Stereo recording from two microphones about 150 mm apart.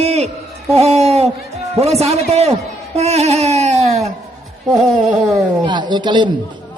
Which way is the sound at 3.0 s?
45° right (ahead or behind).